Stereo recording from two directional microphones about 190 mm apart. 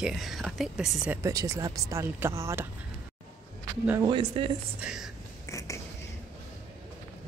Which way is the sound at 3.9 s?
20° right (ahead or behind).